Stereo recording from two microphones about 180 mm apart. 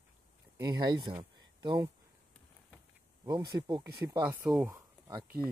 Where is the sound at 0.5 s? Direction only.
20° right (ahead or behind).